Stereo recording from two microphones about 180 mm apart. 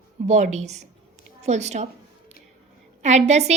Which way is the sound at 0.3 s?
40° right (ahead or behind).